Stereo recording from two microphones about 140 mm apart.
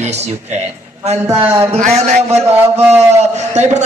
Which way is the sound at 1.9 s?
55° right (ahead or behind).